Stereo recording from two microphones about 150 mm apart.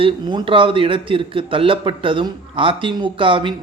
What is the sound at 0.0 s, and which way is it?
A man's voice, 35° right (ahead or behind).